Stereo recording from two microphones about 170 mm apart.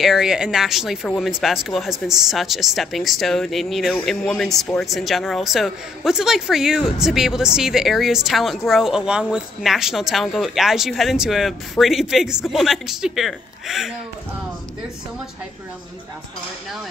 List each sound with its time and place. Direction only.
0.0 s a woman's voice: centre (ahead or behind)